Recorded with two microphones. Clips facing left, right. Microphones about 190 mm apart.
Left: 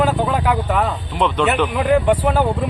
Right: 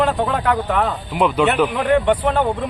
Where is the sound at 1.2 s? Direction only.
5° right (ahead or behind).